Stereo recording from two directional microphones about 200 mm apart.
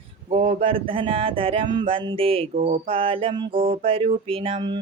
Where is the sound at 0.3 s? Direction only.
25° right (ahead or behind).